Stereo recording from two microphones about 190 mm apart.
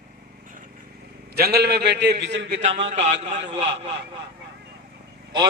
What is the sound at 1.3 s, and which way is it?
A man's voice, 55° right (ahead or behind).